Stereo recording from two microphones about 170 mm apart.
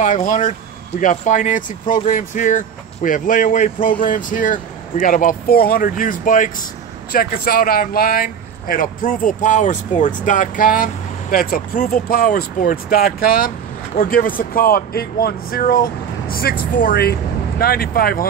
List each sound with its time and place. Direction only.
0.0 s speech: 50° left (ahead or behind)